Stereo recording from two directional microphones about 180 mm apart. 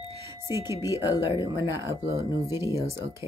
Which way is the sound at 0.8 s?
20° left (ahead or behind).